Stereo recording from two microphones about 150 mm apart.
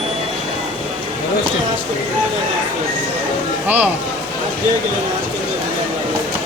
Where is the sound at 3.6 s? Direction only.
10° right (ahead or behind).